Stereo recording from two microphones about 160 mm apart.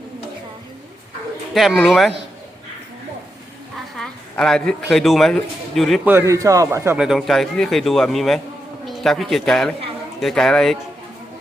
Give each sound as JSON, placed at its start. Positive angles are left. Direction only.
{"t": 1.5, "sound": "a man's voice", "side_deg": 0}
{"t": 3.9, "sound": "a sound", "side_deg": 5}
{"t": 4.9, "sound": "a man's voice", "side_deg": 0}
{"t": 6.1, "sound": "a man's voice", "side_deg": -15}
{"t": 7.0, "sound": "a man's voice", "side_deg": 0}